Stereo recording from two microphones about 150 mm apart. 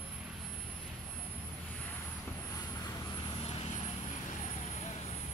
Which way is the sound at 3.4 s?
45° left (ahead or behind).